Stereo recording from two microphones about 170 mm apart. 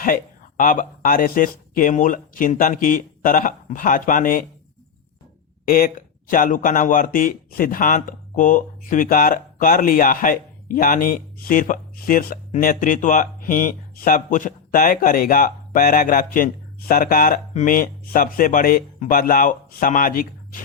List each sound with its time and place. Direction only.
0.0 s speech: 55° left (ahead or behind)
5.6 s speech: 60° left (ahead or behind)